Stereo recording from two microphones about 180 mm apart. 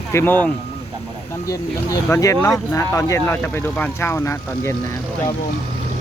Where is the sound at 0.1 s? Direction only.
10° left (ahead or behind).